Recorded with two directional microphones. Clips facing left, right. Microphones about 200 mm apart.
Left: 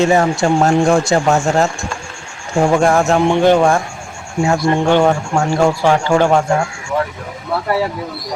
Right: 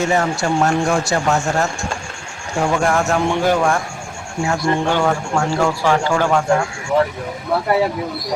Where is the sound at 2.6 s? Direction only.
30° left (ahead or behind).